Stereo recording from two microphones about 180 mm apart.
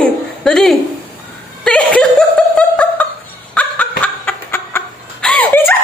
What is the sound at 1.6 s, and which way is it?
Snicker, 5° left (ahead or behind).